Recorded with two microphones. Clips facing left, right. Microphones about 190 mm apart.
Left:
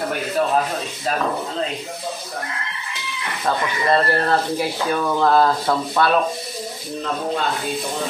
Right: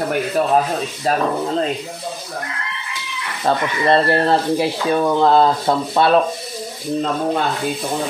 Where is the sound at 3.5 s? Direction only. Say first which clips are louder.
Right 3 dB; 30° right (ahead or behind).